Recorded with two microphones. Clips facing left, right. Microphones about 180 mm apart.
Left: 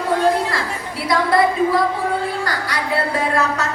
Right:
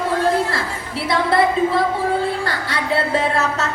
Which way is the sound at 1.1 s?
25° right (ahead or behind).